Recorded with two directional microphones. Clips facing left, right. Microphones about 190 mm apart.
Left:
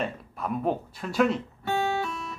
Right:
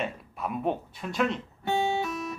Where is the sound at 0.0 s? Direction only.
Centre (ahead or behind).